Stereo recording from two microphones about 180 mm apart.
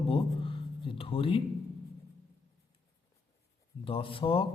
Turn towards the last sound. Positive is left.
turn(degrees=30)  # may be behind; listen again after turning